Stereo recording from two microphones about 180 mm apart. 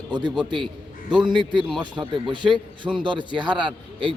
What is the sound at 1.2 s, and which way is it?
Speech, 25° right (ahead or behind).